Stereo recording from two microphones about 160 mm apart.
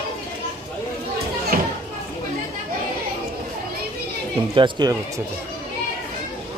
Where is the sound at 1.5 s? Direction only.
65° right (ahead or behind).